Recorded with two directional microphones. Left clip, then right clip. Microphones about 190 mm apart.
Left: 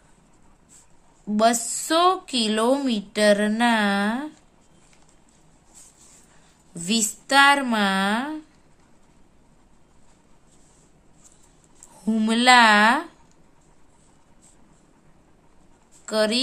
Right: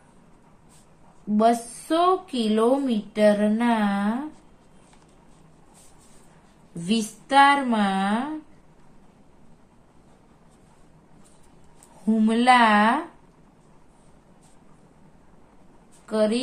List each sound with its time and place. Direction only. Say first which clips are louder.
1.3 s a woman's voice: left 1 dB; 55° left (ahead or behind)
6.9 s a woman's voice: left 2 dB; 50° left (ahead or behind)
12.1 s a woman's voice: left 2 dB; 45° left (ahead or behind)
16.1 s a woman's voice: left 1 dB; 50° left (ahead or behind)